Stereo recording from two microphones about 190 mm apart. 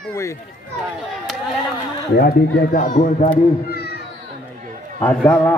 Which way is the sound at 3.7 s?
60° left (ahead or behind).